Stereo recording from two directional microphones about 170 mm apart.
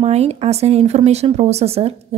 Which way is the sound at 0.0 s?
40° right (ahead or behind).